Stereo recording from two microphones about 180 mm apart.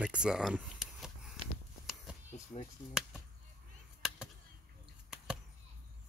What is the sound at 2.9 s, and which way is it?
Chop, centre (ahead or behind).